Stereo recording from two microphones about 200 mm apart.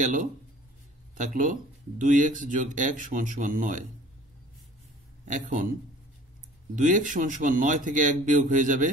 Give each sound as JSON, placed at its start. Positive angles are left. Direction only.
{"t": 0.0, "sound": "speech", "side_deg": -40}
{"t": 5.3, "sound": "speech", "side_deg": -40}